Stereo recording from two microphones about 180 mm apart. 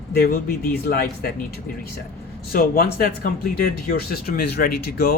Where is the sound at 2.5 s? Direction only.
55° left (ahead or behind).